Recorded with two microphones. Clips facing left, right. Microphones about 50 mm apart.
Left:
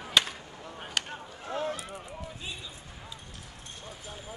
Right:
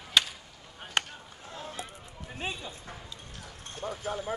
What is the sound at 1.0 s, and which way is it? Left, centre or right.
Chop, right.